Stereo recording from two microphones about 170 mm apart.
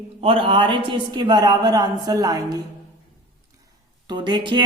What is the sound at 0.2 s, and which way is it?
A woman's voice, 30° right (ahead or behind).